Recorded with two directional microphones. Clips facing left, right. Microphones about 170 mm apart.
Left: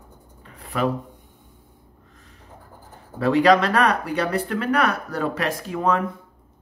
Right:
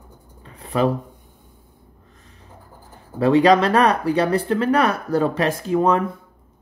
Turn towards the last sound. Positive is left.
turn(degrees=-25)  # may be behind; listen again after turning